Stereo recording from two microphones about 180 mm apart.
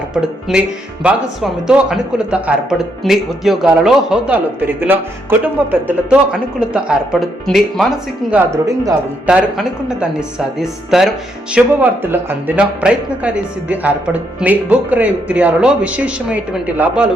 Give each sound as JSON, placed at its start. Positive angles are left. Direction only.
{"t": 0.1, "sound": "a man's voice", "side_deg": -5}
{"t": 8.6, "sound": "speech", "side_deg": -20}
{"t": 9.2, "sound": "a man's voice", "side_deg": -5}